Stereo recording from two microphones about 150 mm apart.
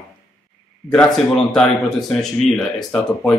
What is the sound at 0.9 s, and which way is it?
Speech, 5° left (ahead or behind).